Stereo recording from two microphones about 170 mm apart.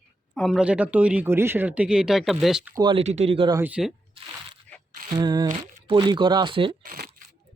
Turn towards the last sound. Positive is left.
turn(degrees=-55)  # may be behind; listen again after turning